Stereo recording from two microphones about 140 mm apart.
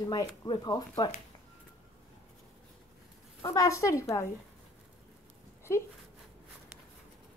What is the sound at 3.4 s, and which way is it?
Speech, 25° left (ahead or behind).